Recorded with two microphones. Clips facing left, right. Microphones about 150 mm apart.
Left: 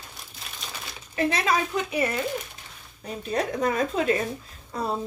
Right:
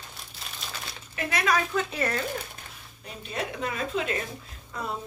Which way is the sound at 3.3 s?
45° left (ahead or behind).